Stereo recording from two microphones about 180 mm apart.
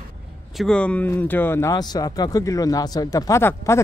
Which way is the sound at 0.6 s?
5° left (ahead or behind).